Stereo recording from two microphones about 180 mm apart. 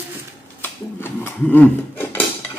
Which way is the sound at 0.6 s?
10° left (ahead or behind).